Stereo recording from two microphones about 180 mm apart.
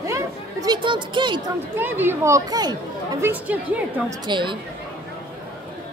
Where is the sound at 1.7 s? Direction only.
10° right (ahead or behind).